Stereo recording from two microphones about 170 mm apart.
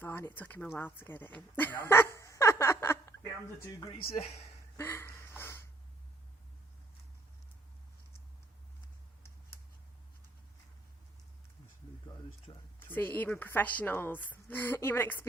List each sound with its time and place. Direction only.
0.0 s speech: 10° left (ahead or behind)
3.8 s speech: 25° left (ahead or behind)
4.8 s a sound: 15° left (ahead or behind)
12.5 s speech: 30° left (ahead or behind)
12.8 s a woman's voice: 10° left (ahead or behind)